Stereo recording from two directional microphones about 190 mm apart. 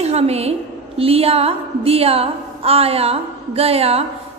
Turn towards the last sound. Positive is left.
turn(degrees=-30)  # may be behind; listen again after turning